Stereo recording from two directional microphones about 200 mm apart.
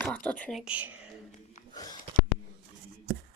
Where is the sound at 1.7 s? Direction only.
20° left (ahead or behind).